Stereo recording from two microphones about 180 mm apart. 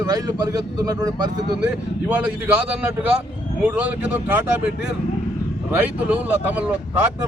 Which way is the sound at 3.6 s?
5° right (ahead or behind).